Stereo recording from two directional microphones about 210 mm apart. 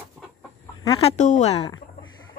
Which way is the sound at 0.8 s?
25° left (ahead or behind).